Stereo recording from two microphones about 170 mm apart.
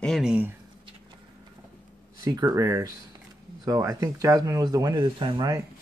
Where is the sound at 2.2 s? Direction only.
20° right (ahead or behind).